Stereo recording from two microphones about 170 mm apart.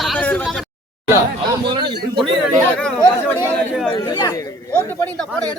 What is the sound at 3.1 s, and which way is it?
Speech, 5° left (ahead or behind).